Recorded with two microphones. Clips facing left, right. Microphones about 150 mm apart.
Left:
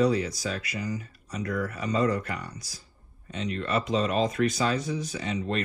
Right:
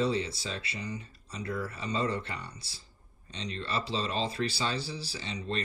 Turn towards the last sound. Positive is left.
turn(degrees=-30)  # may be behind; listen again after turning